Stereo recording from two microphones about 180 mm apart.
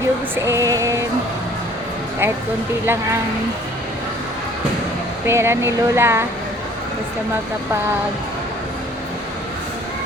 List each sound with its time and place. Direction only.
0.4 s speech: 15° right (ahead or behind)
5.2 s speech: 15° right (ahead or behind)